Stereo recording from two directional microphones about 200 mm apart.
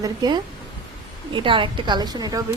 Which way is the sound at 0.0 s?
20° right (ahead or behind).